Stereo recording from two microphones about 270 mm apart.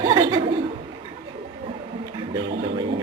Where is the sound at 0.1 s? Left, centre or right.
Centre.